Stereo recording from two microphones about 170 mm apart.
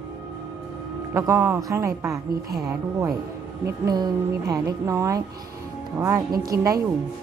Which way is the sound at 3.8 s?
20° right (ahead or behind).